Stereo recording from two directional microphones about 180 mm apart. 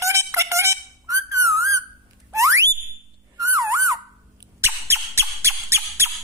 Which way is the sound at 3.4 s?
15° right (ahead or behind).